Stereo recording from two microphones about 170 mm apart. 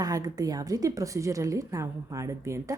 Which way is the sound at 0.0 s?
20° right (ahead or behind).